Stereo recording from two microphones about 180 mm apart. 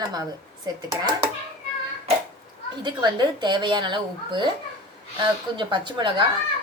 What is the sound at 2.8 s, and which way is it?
A child's voice, 25° right (ahead or behind).